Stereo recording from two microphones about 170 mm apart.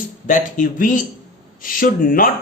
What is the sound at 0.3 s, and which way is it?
Speech, 50° left (ahead or behind).